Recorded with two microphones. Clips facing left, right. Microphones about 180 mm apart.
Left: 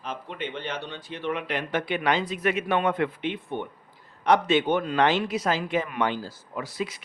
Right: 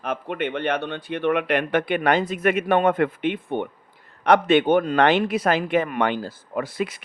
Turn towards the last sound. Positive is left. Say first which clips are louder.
# right 5 dB
turn(degrees=-55)  # may be behind; listen again after turning